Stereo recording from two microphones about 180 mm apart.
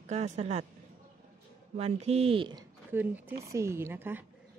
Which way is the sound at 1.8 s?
35° right (ahead or behind).